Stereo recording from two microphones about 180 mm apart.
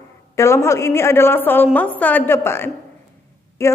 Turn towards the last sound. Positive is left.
turn(degrees=15)  # may be behind; listen again after turning